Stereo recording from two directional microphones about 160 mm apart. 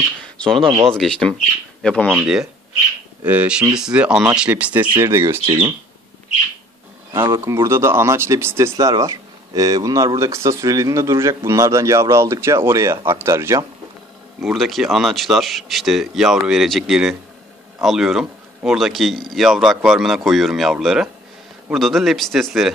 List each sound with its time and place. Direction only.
0.2 s a sound: 5° left (ahead or behind)
0.6 s speech: 35° right (ahead or behind)
0.9 s speech: 5° left (ahead or behind); by 5.4 s 15° right (ahead or behind)
5.5 s speech: 35° right (ahead or behind)
7.1 s speech: 15° right (ahead or behind)
14.4 s speech: centre (ahead or behind)